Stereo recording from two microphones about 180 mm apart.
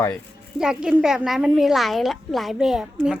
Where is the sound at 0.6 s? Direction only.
5° right (ahead or behind).